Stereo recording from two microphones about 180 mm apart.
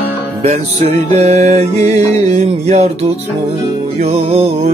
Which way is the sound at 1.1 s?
40° right (ahead or behind).